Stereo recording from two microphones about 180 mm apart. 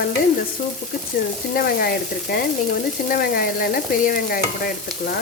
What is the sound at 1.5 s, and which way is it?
Stir, 60° left (ahead or behind).